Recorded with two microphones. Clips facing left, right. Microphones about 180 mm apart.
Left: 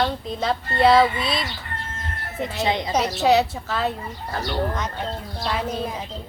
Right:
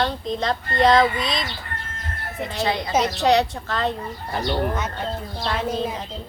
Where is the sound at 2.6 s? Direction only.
20° left (ahead or behind).